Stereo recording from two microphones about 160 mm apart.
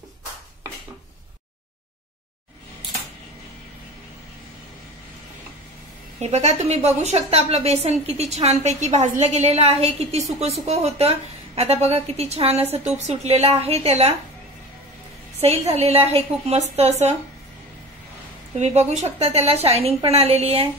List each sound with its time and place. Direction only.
6.1 s a woman's voice: 45° right (ahead or behind)
15.4 s a woman's voice: 40° right (ahead or behind)
18.6 s a woman's voice: 45° right (ahead or behind)